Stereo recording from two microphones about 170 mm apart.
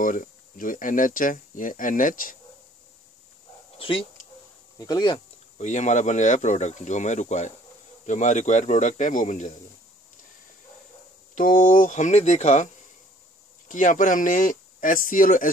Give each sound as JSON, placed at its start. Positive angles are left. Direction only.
{"t": 0.0, "sound": "speech", "side_deg": 50}
{"t": 3.7, "sound": "speech", "side_deg": 30}
{"t": 5.6, "sound": "speech", "side_deg": 45}
{"t": 11.3, "sound": "speech", "side_deg": 50}
{"t": 13.7, "sound": "speech", "side_deg": 50}